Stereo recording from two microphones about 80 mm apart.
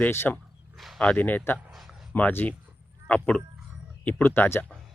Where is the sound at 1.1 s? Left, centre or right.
Left.